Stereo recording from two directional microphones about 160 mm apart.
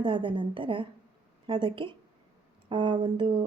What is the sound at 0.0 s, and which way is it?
A woman's voice, 30° right (ahead or behind).